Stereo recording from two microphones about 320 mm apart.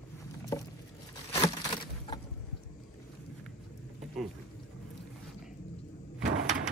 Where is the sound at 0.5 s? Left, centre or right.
Centre.